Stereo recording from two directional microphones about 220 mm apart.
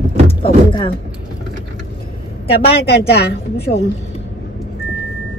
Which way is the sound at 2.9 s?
50° left (ahead or behind).